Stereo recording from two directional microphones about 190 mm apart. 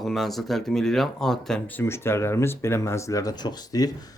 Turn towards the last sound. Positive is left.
turn(degrees=20)  # may be behind; listen again after turning